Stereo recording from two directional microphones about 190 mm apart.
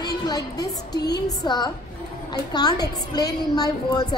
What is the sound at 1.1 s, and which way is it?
A woman's voice, 20° left (ahead or behind).